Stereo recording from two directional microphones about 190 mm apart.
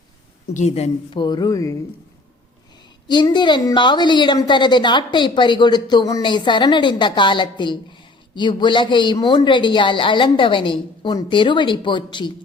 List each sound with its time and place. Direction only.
0.5 s a woman's voice: 35° left (ahead or behind); by 1.7 s 15° left (ahead or behind)
3.1 s a woman's voice: 25° left (ahead or behind)